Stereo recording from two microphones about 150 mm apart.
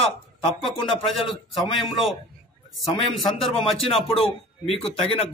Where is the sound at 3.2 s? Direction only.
Centre (ahead or behind).